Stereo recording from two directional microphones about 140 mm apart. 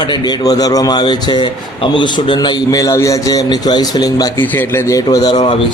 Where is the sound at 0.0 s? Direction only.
30° left (ahead or behind).